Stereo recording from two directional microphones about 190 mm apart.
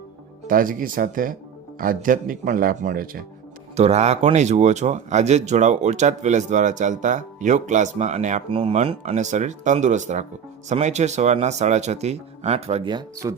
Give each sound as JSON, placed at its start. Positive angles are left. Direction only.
{"t": 0.4, "sound": "speech", "side_deg": -45}
{"t": 3.8, "sound": "speech", "side_deg": -35}